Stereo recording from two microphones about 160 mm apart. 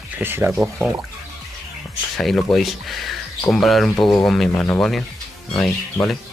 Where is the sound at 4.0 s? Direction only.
25° left (ahead or behind).